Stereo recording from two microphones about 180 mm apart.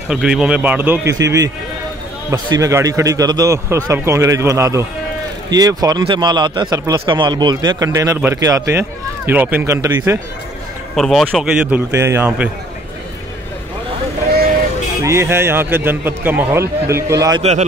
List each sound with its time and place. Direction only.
0.1 s a man's voice: 5° right (ahead or behind)
11.0 s a man's voice: centre (ahead or behind)
15.0 s a man's voice: 15° right (ahead or behind)
17.4 s a man's voice: 35° right (ahead or behind)